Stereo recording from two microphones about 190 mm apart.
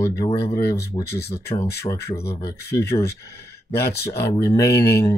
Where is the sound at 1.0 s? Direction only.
60° left (ahead or behind).